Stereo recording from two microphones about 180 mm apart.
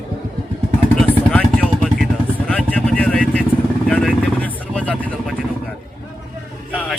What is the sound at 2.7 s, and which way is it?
Speech, 5° left (ahead or behind).